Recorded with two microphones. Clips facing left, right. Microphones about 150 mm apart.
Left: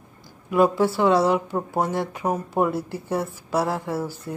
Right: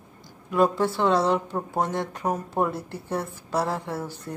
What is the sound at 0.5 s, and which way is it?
Speech, 5° left (ahead or behind).